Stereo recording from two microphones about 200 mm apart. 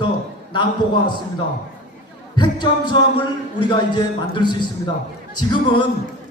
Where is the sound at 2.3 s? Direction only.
20° left (ahead or behind).